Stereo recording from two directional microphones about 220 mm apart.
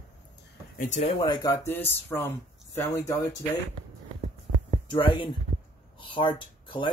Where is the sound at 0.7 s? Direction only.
35° left (ahead or behind).